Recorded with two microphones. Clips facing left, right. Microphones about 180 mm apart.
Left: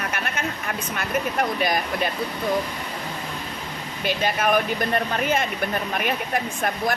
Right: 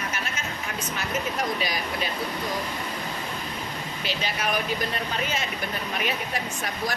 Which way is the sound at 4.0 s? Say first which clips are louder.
Left 7 dB; 50° left (ahead or behind).